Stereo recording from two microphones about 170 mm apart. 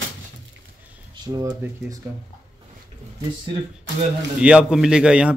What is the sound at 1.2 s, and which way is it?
Speech, 25° right (ahead or behind).